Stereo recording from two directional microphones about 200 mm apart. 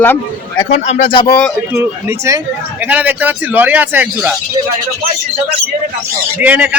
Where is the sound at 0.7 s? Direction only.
30° left (ahead or behind).